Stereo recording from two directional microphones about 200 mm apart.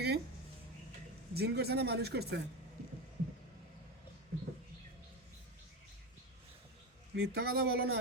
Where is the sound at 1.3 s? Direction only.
55° right (ahead or behind).